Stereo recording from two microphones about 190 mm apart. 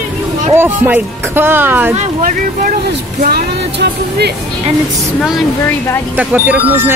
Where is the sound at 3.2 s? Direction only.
55° right (ahead or behind).